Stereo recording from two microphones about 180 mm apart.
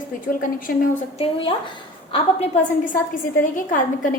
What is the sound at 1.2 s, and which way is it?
Speech, 30° left (ahead or behind).